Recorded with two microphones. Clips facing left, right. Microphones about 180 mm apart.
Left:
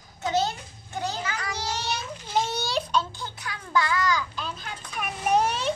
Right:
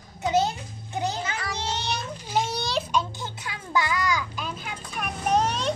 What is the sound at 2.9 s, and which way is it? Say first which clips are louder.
Music: even; 20° right (ahead or behind).